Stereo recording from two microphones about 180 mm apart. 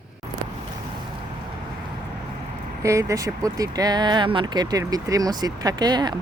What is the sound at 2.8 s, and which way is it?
Speech, 15° right (ahead or behind).